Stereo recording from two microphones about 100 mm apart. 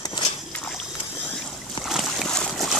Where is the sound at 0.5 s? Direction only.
5° left (ahead or behind).